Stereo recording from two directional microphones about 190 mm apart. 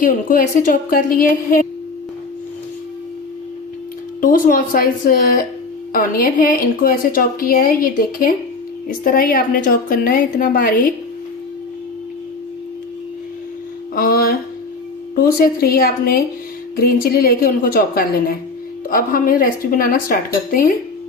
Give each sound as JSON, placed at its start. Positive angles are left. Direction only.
{"t": 0.0, "sound": "a woman's voice", "side_deg": 45}
{"t": 4.2, "sound": "a woman's voice", "side_deg": 45}
{"t": 13.9, "sound": "a sound", "side_deg": 50}
{"t": 15.1, "sound": "a woman's voice", "side_deg": 50}